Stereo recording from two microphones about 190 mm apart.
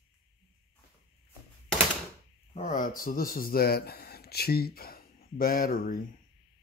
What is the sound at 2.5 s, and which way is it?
Speech, 40° left (ahead or behind).